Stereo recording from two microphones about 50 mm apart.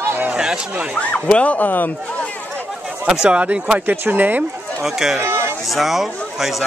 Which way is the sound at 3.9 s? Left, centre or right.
Right.